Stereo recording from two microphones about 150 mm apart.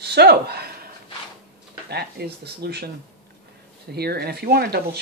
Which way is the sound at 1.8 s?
90° right.